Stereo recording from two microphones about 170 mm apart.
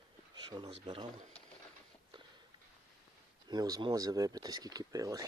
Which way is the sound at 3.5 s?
25° right (ahead or behind).